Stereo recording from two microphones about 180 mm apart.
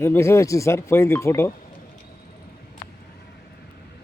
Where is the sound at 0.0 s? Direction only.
15° left (ahead or behind).